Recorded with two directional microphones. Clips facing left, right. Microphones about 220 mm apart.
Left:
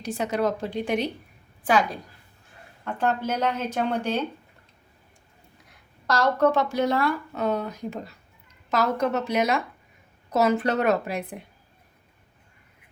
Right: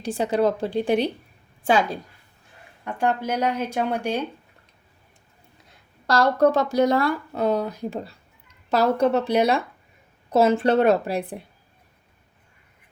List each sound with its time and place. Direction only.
0.0 s a woman's voice: 30° right (ahead or behind)
2.8 s speech: 15° right (ahead or behind)
6.1 s speech: 35° right (ahead or behind)